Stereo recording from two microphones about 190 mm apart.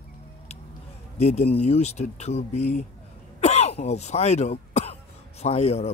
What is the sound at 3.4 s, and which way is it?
Cough, 35° left (ahead or behind).